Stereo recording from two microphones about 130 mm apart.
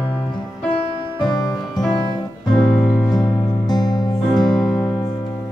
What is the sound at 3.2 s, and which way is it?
Music, 35° left (ahead or behind).